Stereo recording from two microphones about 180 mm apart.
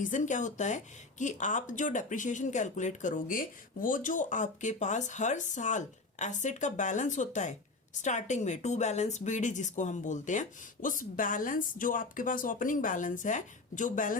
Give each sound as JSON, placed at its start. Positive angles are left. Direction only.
{"t": 0.0, "sound": "speech", "side_deg": 45}